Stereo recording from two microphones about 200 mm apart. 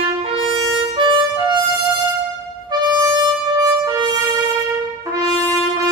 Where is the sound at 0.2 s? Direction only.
25° right (ahead or behind).